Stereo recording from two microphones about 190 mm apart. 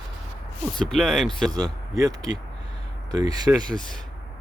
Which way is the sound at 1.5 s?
20° right (ahead or behind).